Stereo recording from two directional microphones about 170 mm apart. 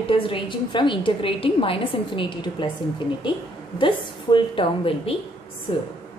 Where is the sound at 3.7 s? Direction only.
30° left (ahead or behind).